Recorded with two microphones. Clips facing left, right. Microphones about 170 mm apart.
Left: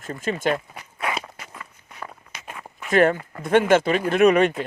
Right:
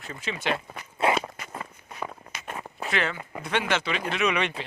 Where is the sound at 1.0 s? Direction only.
25° right (ahead or behind).